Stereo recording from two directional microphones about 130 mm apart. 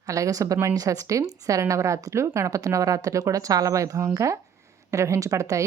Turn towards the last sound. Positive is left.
turn(degrees=-25)  # may be behind; listen again after turning